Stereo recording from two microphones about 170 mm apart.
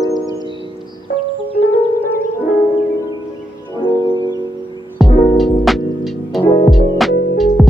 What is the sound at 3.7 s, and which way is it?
Music, 25° left (ahead or behind).